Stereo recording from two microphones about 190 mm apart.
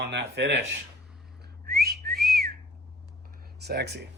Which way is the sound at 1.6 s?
55° right (ahead or behind).